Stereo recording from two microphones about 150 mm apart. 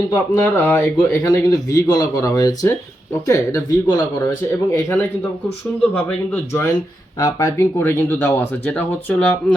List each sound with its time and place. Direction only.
0.1 s speech: 15° left (ahead or behind)
1.3 s speech: 25° left (ahead or behind)
7.2 s speech: 25° left (ahead or behind); by 9.6 s 10° left (ahead or behind)